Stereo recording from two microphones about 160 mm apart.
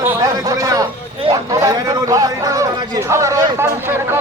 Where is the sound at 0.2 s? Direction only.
20° right (ahead or behind).